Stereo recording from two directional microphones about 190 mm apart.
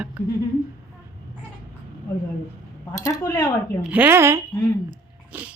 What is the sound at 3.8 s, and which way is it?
A woman's voice, 10° right (ahead or behind).